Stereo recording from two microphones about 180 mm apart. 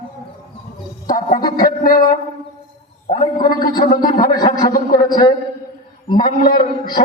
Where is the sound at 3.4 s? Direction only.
55° left (ahead or behind).